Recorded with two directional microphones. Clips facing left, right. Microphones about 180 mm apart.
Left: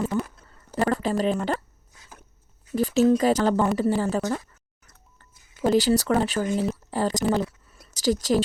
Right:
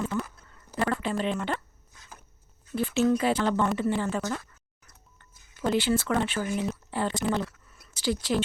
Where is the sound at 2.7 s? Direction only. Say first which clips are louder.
Left 5 dB; 40° left (ahead or behind).